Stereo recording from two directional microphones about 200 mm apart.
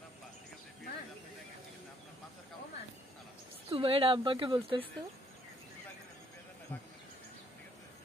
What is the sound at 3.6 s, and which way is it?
A woman's voice, 25° right (ahead or behind).